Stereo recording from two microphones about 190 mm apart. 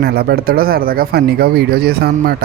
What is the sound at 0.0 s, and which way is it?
Speech, 55° right (ahead or behind).